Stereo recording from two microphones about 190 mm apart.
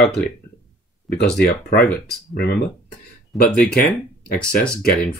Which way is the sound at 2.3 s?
60° left (ahead or behind).